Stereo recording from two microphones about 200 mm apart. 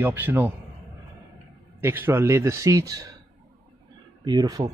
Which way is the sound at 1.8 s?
10° right (ahead or behind).